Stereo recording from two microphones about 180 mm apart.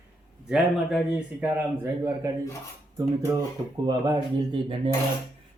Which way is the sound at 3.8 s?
25° right (ahead or behind).